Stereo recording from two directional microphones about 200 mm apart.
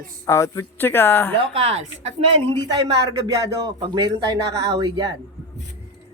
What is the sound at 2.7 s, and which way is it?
Speech, 20° right (ahead or behind).